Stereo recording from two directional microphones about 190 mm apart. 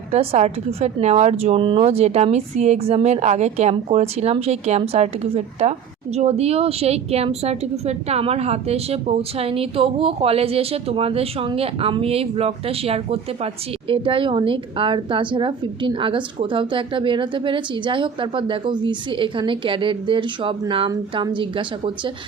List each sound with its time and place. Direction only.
0.1 s a woman's voice: 35° right (ahead or behind)